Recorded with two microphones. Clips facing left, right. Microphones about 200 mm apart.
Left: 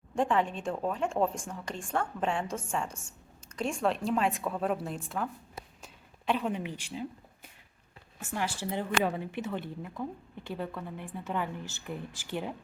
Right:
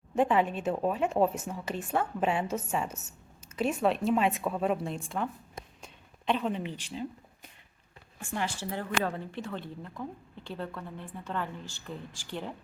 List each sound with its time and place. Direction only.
0.2 s a woman's voice: 5° right (ahead or behind); by 7.1 s 10° left (ahead or behind)
8.2 s a woman's voice: 5° left (ahead or behind)